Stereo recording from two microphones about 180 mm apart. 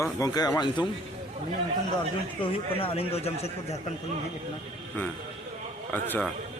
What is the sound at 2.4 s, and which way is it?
Speech, 30° left (ahead or behind).